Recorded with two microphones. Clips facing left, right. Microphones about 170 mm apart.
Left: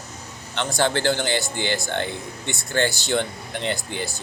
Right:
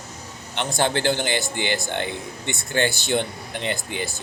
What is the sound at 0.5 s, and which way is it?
Speech, 20° right (ahead or behind).